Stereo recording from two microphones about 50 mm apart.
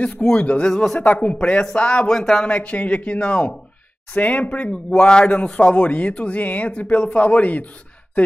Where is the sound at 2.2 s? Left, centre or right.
Centre.